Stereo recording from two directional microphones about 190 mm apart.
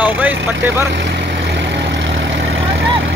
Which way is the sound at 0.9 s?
65° right (ahead or behind).